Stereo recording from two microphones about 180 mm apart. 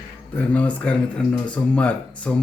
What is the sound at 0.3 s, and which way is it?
Speech, 10° left (ahead or behind).